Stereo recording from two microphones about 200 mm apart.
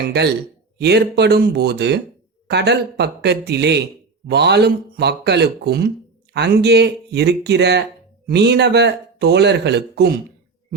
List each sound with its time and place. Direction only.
0.8 s speech: 55° right (ahead or behind)